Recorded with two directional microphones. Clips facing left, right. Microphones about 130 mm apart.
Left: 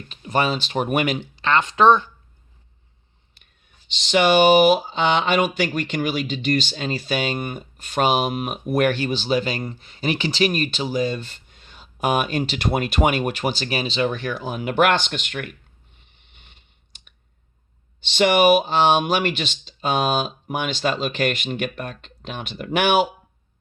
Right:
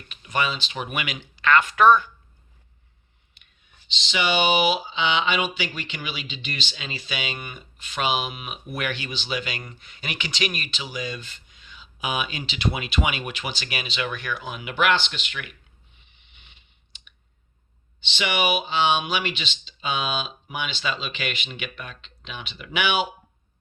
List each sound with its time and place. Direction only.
0.1 s speech: 35° left (ahead or behind)
3.9 s speech: 45° left (ahead or behind)
16.3 s a sound: 45° left (ahead or behind)
18.1 s speech: 45° left (ahead or behind)